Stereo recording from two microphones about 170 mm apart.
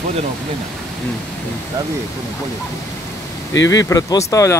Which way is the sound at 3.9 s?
20° left (ahead or behind).